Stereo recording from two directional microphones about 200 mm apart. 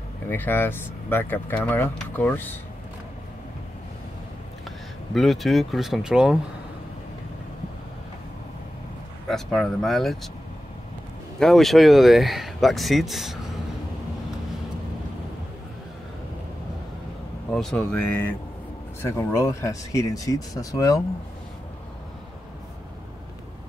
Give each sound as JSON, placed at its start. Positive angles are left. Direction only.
{"t": 0.3, "sound": "speech", "side_deg": 10}
{"t": 4.6, "sound": "speech", "side_deg": 0}
{"t": 9.3, "sound": "speech", "side_deg": 0}
{"t": 11.3, "sound": "speech", "side_deg": 0}
{"t": 17.5, "sound": "speech", "side_deg": 5}